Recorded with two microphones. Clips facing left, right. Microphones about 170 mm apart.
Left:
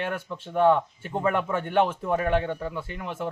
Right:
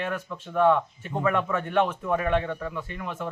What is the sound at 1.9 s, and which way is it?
A man's voice, 30° left (ahead or behind).